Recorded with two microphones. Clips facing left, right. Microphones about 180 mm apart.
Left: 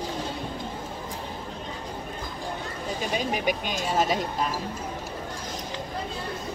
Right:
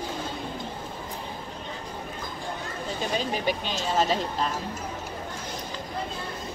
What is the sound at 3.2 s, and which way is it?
Speech, 10° left (ahead or behind).